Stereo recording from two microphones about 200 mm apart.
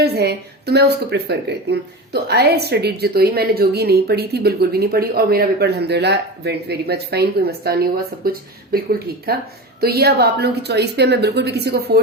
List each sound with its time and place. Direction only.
0.0 s a woman's voice: 55° right (ahead or behind)